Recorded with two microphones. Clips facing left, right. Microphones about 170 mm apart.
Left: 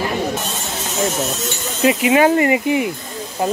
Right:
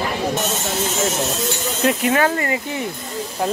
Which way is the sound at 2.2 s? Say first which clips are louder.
Left 6 dB; 15° left (ahead or behind).